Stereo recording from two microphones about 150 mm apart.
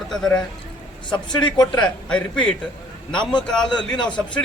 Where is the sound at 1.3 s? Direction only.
25° left (ahead or behind).